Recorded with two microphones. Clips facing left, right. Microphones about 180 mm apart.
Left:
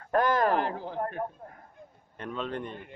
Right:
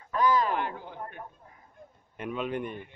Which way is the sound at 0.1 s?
55° left (ahead or behind).